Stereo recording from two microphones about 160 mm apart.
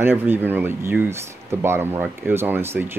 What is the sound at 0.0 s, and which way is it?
Speech, 15° right (ahead or behind).